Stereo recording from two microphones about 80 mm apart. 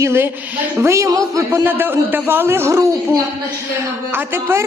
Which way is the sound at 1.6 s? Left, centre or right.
Right.